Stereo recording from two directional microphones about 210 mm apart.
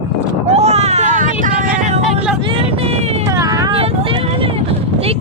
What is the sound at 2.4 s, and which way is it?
Vehicle, 25° right (ahead or behind).